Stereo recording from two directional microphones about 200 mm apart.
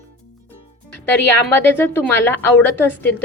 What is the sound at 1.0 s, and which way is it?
A woman's voice, 10° left (ahead or behind).